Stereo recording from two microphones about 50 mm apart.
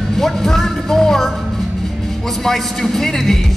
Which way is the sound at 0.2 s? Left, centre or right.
Centre.